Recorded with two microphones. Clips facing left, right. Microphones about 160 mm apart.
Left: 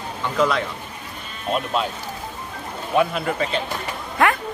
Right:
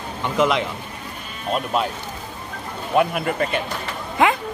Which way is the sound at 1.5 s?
Centre (ahead or behind).